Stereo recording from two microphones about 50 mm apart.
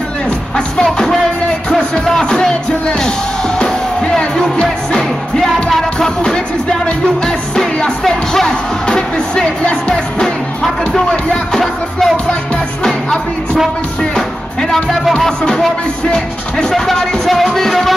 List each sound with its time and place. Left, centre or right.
0.8 s music: centre
3.5 s music: centre
14.1 s music: centre
16.7 s speech: centre